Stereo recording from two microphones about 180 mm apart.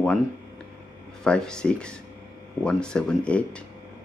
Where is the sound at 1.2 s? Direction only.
5° left (ahead or behind).